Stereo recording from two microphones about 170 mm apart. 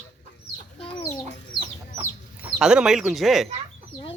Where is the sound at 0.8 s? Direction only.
25° left (ahead or behind).